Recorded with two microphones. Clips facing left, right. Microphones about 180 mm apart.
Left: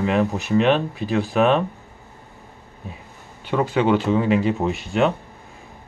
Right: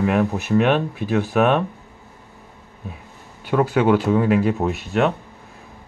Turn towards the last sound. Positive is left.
turn(degrees=0)  # may be behind; listen again after turning